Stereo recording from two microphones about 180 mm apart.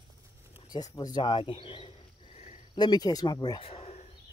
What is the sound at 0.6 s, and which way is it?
Speech, 20° left (ahead or behind).